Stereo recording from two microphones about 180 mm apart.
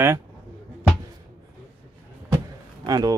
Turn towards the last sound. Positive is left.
turn(degrees=-20)  # may be behind; listen again after turning